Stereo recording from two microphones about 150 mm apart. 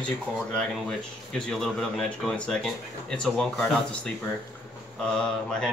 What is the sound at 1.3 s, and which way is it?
Speech, 5° left (ahead or behind).